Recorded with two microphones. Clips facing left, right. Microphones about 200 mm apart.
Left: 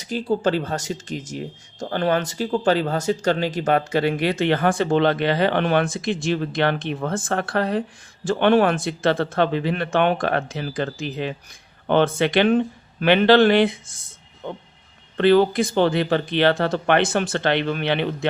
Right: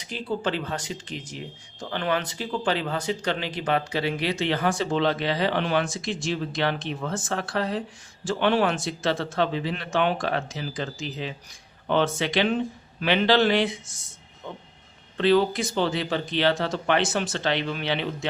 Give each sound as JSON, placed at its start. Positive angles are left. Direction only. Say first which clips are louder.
{"t": 0.0, "sound": "speech", "louder": "left 7 dB", "side_deg": 40}
{"t": 14.4, "sound": "vehicle", "louder": "left 6 dB", "side_deg": 60}
{"t": 15.2, "sound": "speech", "louder": "left 5 dB", "side_deg": 60}